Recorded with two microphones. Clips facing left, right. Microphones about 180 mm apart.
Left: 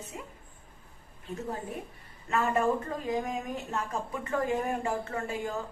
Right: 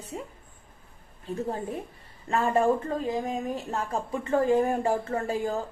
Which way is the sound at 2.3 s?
30° right (ahead or behind).